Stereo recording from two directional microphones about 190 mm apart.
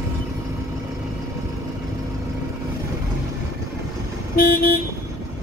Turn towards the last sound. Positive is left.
turn(degrees=50)  # may be behind; listen again after turning